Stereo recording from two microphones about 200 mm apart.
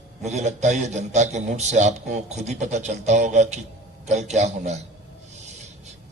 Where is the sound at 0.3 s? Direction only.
35° right (ahead or behind).